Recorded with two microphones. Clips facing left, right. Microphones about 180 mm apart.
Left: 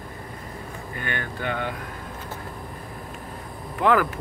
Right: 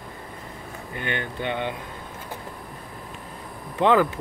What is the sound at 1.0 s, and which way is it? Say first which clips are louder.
Speech: right 2 dB; 20° right (ahead or behind).